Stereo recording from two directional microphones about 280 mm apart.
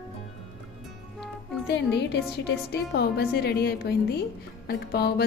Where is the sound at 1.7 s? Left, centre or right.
Left.